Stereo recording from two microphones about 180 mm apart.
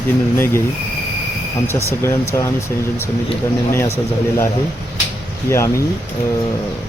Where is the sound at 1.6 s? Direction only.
15° left (ahead or behind).